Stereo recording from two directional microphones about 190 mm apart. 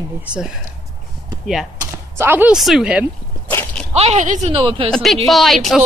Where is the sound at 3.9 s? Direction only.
35° right (ahead or behind).